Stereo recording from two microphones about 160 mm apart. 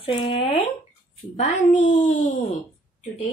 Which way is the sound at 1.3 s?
50° left (ahead or behind).